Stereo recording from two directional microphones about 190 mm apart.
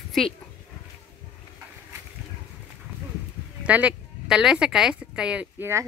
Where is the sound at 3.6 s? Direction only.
5° right (ahead or behind).